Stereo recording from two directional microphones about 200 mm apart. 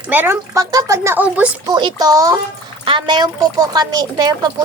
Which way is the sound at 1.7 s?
20° right (ahead or behind).